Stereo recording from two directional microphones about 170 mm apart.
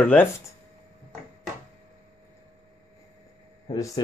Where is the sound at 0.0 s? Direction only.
10° left (ahead or behind).